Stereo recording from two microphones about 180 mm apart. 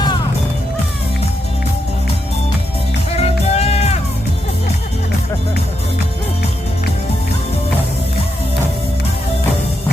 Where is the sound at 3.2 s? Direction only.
35° left (ahead or behind).